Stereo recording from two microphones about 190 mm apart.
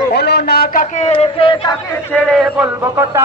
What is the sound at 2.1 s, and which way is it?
Speech, centre (ahead or behind).